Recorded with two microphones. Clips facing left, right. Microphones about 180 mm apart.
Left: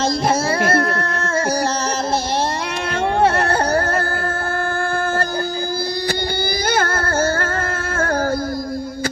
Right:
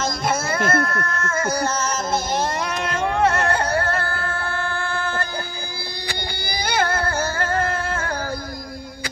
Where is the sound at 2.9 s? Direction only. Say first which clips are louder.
Left 4 dB; 30° left (ahead or behind).